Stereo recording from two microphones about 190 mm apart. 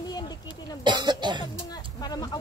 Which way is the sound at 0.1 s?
20° left (ahead or behind).